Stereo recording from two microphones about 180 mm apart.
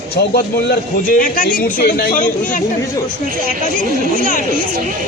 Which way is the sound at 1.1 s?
50° left (ahead or behind).